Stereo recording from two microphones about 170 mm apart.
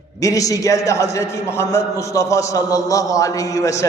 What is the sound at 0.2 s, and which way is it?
A man's voice, 20° left (ahead or behind).